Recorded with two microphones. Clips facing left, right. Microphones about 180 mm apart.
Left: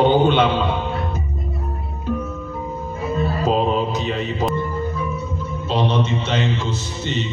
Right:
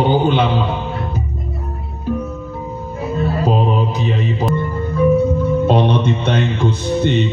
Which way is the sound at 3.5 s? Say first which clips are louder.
Left 1 dB; 10° right (ahead or behind).